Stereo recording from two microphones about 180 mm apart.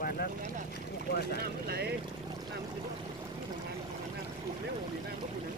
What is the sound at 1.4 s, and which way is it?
Boat, 60° right (ahead or behind).